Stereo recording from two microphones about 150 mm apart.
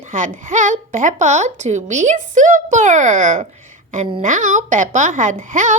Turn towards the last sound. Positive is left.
turn(degrees=-55)  # may be behind; listen again after turning